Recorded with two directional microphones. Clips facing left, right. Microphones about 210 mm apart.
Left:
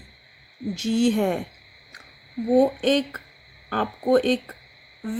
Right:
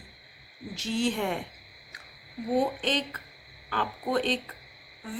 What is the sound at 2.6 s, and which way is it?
Speech, 45° left (ahead or behind).